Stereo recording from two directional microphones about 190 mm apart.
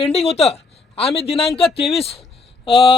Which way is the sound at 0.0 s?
30° left (ahead or behind).